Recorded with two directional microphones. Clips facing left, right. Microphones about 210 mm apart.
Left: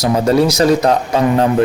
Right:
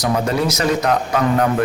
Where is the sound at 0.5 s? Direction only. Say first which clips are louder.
Left 5 dB; 35° left (ahead or behind).